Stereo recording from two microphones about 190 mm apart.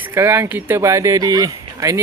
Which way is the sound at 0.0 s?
10° right (ahead or behind).